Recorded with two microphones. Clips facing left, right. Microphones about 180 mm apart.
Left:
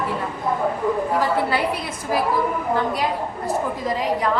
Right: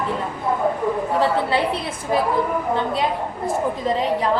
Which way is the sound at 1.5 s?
25° right (ahead or behind).